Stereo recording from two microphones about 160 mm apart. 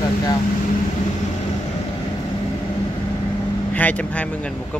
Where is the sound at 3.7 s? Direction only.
10° left (ahead or behind).